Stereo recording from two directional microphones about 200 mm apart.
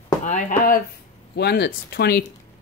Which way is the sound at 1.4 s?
55° left (ahead or behind).